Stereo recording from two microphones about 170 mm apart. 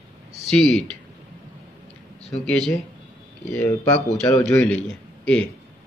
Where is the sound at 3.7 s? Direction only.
20° left (ahead or behind).